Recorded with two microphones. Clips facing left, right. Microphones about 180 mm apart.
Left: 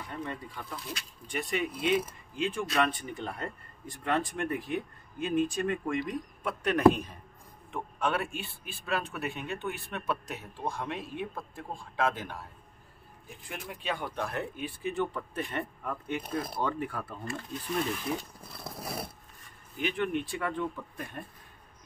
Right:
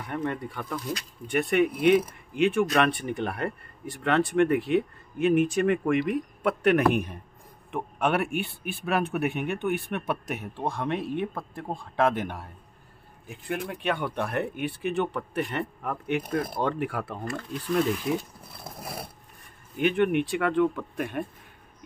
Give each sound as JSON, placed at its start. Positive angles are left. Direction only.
{"t": 0.0, "sound": "a man's voice", "side_deg": -60}
{"t": 19.8, "sound": "speech", "side_deg": -60}